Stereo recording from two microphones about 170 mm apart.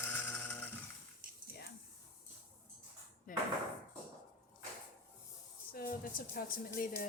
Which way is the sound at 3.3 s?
50° left (ahead or behind).